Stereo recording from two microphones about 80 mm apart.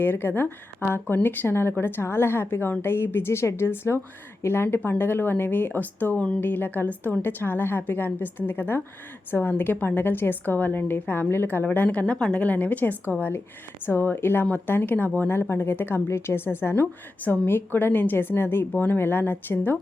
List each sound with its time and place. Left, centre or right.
0.0 s a woman's voice: left